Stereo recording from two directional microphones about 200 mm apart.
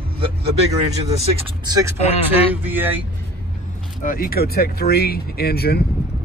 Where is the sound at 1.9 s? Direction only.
30° left (ahead or behind).